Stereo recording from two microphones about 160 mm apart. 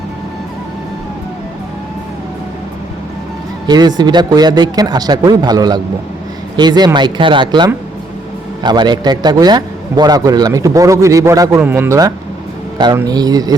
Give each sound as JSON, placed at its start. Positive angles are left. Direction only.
{"t": 3.7, "sound": "a man's voice", "side_deg": -25}